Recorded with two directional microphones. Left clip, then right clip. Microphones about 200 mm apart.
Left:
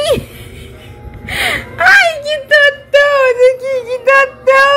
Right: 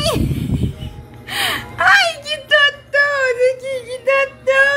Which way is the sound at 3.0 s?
10° left (ahead or behind).